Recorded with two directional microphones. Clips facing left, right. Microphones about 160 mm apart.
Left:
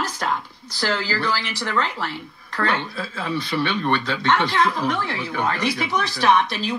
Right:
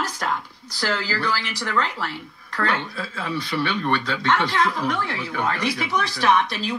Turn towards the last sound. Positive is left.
turn(degrees=25)  # may be behind; listen again after turning